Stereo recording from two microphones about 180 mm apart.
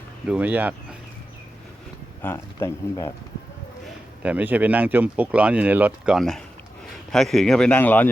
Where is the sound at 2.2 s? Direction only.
15° left (ahead or behind).